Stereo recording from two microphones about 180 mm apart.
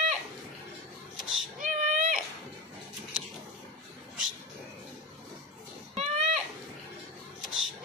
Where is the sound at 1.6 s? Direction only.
45° right (ahead or behind).